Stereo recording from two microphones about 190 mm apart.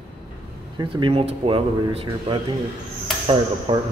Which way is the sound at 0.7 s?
25° right (ahead or behind).